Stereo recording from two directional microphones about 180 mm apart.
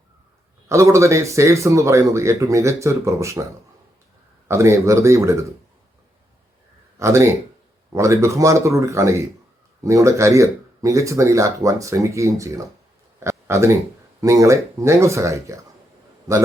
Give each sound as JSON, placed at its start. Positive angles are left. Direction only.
{"t": 0.7, "sound": "speech", "side_deg": -15}
{"t": 4.4, "sound": "speech", "side_deg": -15}
{"t": 7.0, "sound": "speech", "side_deg": -15}
{"t": 13.1, "sound": "a sound", "side_deg": -15}
{"t": 14.2, "sound": "speech", "side_deg": -15}